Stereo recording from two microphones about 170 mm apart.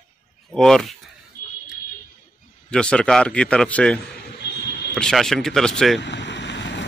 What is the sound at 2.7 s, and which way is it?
A man's voice, 5° left (ahead or behind).